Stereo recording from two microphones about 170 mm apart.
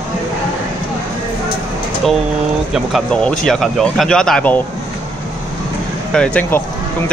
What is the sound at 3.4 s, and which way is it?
Speech, 5° left (ahead or behind).